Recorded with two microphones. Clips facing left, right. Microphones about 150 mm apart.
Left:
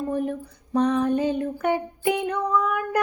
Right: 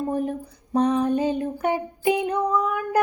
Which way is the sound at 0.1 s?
35° right (ahead or behind).